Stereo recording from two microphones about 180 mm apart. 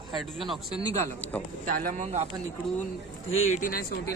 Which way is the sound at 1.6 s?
50° right (ahead or behind).